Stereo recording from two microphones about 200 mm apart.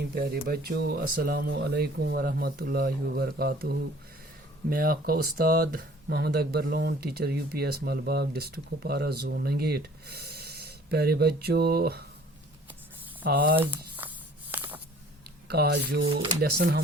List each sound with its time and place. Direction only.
0.1 s speech: 50° right (ahead or behind)
13.2 s speech: 45° right (ahead or behind)
13.6 s a sound: 10° right (ahead or behind)
15.4 s speech: 50° right (ahead or behind)